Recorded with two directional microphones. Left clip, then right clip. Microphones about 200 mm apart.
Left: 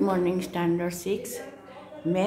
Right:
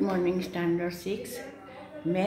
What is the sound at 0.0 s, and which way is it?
A woman's voice, 15° left (ahead or behind).